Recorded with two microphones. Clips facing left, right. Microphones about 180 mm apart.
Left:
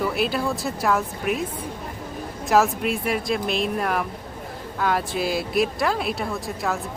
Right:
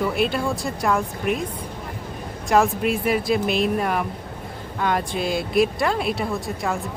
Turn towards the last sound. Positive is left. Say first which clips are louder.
# right 1 dB
turn(degrees=0)  # may be behind; listen again after turning